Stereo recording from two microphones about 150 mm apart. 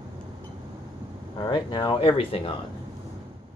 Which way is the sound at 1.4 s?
30° left (ahead or behind).